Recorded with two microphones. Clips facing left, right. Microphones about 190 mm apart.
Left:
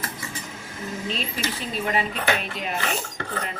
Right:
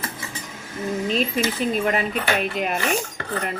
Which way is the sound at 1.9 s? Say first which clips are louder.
Right 2 dB; 55° right (ahead or behind).